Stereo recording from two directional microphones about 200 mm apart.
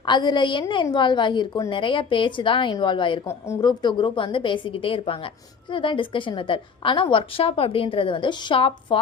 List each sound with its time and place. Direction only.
0.0 s a woman's voice: 20° left (ahead or behind)